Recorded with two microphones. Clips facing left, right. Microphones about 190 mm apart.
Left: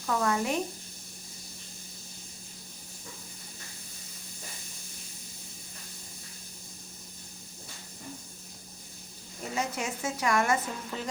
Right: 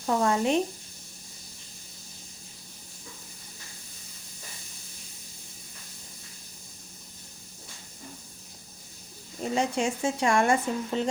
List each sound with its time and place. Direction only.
0.0 s speech: 30° right (ahead or behind)
9.4 s speech: 30° right (ahead or behind)